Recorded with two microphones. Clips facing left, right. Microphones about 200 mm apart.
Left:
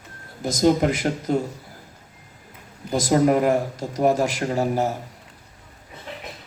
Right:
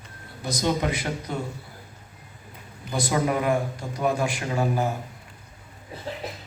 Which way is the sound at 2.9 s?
40° left (ahead or behind).